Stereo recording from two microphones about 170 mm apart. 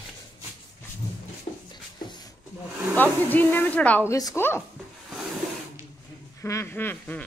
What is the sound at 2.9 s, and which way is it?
Speech, 10° left (ahead or behind).